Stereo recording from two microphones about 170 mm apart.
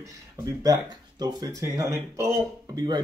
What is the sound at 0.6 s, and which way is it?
Speech, 25° right (ahead or behind).